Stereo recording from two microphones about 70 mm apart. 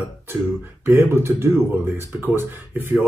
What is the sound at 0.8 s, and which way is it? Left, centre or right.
A man's voice, right.